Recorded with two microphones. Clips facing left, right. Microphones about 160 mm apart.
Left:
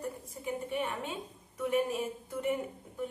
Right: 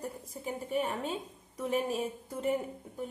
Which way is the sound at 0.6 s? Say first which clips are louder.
Right 6 dB; 35° right (ahead or behind).